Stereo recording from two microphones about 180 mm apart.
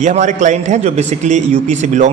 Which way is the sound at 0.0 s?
40° right (ahead or behind).